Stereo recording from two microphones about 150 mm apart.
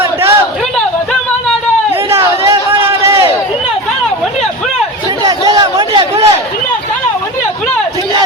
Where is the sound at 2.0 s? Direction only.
20° right (ahead or behind).